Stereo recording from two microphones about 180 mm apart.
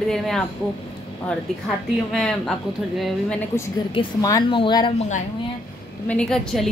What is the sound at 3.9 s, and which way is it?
Speech, 25° left (ahead or behind).